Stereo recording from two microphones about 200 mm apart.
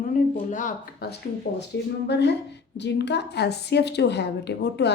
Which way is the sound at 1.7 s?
60° left (ahead or behind).